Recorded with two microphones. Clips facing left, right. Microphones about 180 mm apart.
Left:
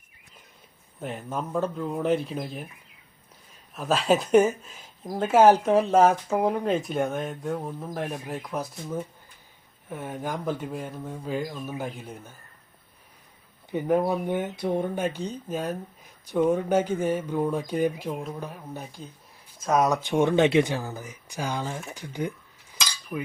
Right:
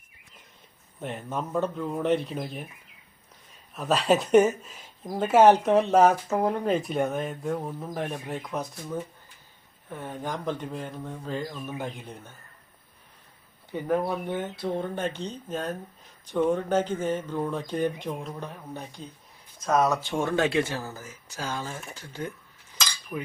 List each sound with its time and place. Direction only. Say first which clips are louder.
1.0 s speech: even; centre (ahead or behind)
3.8 s speech: even; centre (ahead or behind)
9.9 s speech: left 2 dB; 10° left (ahead or behind)
13.7 s speech: left 3 dB; 15° left (ahead or behind)
22.7 s cutlery: left 1 dB; 5° left (ahead or behind)